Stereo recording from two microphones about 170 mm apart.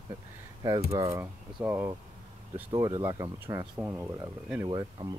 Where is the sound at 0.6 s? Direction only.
20° right (ahead or behind).